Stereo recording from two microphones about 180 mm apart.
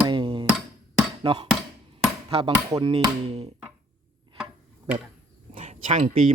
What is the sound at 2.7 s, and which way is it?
Speech, 25° right (ahead or behind).